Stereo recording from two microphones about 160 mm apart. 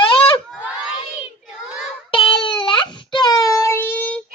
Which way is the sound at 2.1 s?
30° left (ahead or behind).